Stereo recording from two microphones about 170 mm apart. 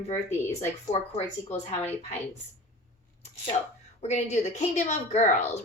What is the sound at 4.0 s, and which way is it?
A woman's voice, 40° left (ahead or behind).